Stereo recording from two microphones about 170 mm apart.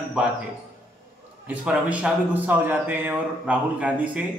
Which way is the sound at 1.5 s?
10° right (ahead or behind).